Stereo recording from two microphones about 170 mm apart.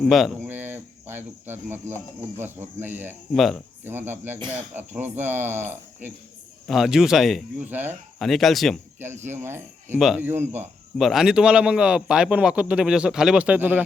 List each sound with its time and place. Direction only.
0.0 s a man's voice: centre (ahead or behind)
0.4 s cricket: 10° right (ahead or behind)
2.4 s speech: 10° right (ahead or behind)
3.3 s a man's voice: centre (ahead or behind)
3.8 s speech: 10° right (ahead or behind)
6.7 s a man's voice: centre (ahead or behind)
8.2 s a man's voice: centre (ahead or behind)
9.2 s speech: 15° right (ahead or behind)
10.0 s a man's voice: centre (ahead or behind)
10.2 s speech: 10° right (ahead or behind)
10.9 s a man's voice: centre (ahead or behind)